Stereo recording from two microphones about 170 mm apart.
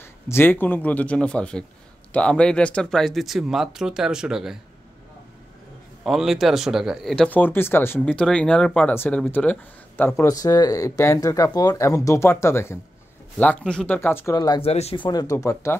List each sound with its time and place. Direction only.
0.0 s speech: 15° left (ahead or behind); by 4.6 s 5° right (ahead or behind)
6.0 s speech: centre (ahead or behind); by 14.6 s 20° left (ahead or behind)
14.6 s speech: 35° left (ahead or behind)
15.0 s speech: 20° left (ahead or behind)